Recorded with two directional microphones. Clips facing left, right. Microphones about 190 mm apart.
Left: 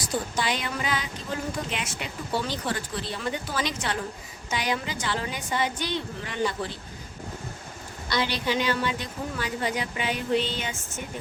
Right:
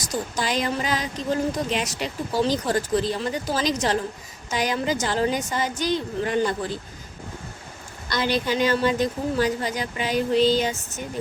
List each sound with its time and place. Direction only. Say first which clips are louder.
0.4 s speech: right 5 dB; 40° right (ahead or behind)
8.2 s speech: right 5 dB; 45° right (ahead or behind)